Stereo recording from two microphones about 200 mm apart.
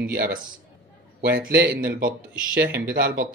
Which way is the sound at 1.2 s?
50° right (ahead or behind).